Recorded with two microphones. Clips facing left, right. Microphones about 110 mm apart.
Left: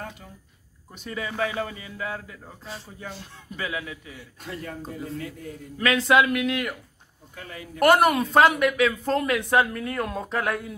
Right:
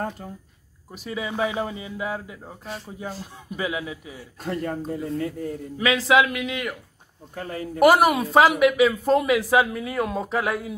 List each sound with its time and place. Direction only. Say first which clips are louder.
0.9 s speech: right 2 dB; 10° right (ahead or behind)
4.4 s a man's voice: right 8 dB; 40° right (ahead or behind)
5.8 s speech: right 1 dB; centre (ahead or behind)
7.3 s a man's voice: right 8 dB; 40° right (ahead or behind)
7.8 s speech: right 2 dB; 5° right (ahead or behind)